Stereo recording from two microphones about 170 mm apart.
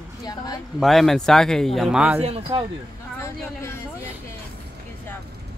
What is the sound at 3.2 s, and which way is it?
Speech, 15° left (ahead or behind).